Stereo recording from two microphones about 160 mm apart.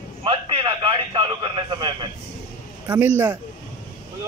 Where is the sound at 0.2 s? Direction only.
30° right (ahead or behind).